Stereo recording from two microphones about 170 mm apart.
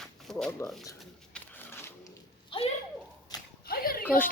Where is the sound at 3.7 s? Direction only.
60° left (ahead or behind).